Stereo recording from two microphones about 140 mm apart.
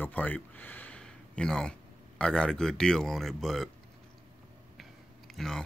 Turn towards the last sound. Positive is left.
turn(degrees=5)  # may be behind; listen again after turning